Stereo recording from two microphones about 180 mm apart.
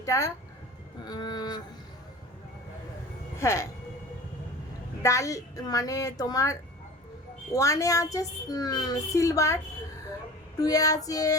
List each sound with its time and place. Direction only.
0.0 s speech: 20° left (ahead or behind)
3.3 s a woman's voice: 15° left (ahead or behind)
5.0 s a woman's voice: 20° left (ahead or behind)
10.6 s speech: 20° left (ahead or behind)